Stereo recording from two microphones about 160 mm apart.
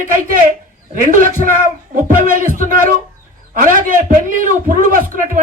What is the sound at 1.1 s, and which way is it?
A man's voice, 55° right (ahead or behind).